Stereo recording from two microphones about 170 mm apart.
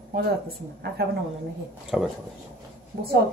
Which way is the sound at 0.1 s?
65° right (ahead or behind).